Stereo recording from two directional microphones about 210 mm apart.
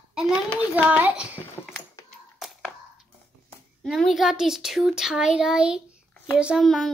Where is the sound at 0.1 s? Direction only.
5° right (ahead or behind).